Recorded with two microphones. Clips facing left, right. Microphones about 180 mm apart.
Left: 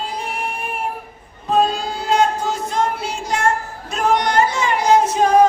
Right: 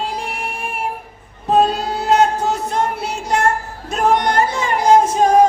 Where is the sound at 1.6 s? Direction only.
65° right (ahead or behind).